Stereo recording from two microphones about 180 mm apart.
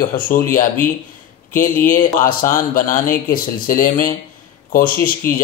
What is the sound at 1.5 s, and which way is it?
A man's voice, 45° left (ahead or behind).